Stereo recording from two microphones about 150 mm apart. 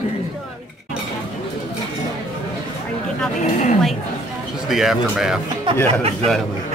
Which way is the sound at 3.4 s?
50° left (ahead or behind).